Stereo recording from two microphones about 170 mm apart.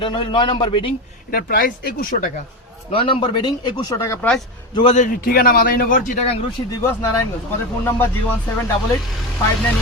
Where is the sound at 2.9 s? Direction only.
30° left (ahead or behind).